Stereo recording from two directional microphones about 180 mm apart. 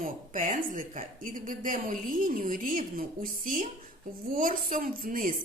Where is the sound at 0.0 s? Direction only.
45° right (ahead or behind).